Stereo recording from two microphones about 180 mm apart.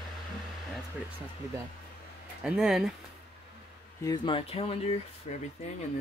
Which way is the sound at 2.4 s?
5° right (ahead or behind).